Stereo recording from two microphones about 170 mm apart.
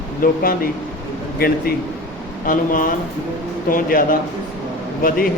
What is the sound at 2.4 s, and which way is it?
A man's voice, 55° left (ahead or behind).